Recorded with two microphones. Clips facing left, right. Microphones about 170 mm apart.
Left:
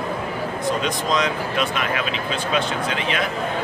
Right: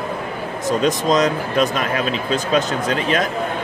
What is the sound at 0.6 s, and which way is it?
Speech, 45° right (ahead or behind).